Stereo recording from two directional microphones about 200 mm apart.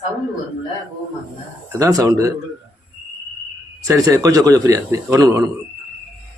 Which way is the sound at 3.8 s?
15° right (ahead or behind).